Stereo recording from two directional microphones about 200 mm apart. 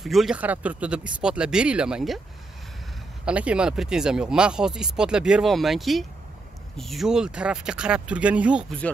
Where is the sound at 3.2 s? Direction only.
5° right (ahead or behind).